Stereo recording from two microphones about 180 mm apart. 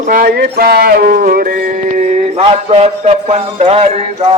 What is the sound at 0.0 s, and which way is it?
Music, 50° right (ahead or behind).